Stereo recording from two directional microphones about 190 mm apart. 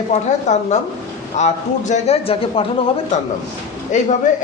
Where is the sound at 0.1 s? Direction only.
40° left (ahead or behind).